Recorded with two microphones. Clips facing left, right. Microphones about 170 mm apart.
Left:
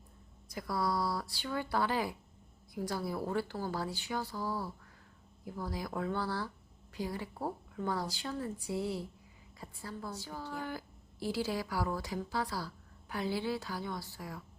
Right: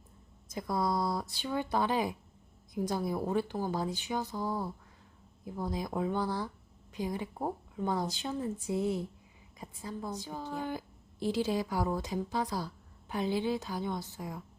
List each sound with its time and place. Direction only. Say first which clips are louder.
0.4 s a woman's voice: right 3 dB; 20° right (ahead or behind)